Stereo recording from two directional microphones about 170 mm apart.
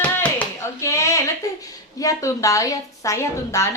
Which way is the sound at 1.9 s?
20° left (ahead or behind).